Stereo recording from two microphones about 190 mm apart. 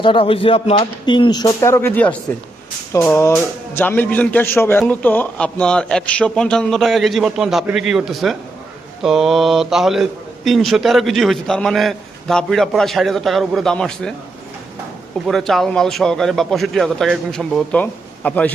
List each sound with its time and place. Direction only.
0.0 s speech: 25° left (ahead or behind); by 14.1 s 5° left (ahead or behind)
15.3 s speech: centre (ahead or behind)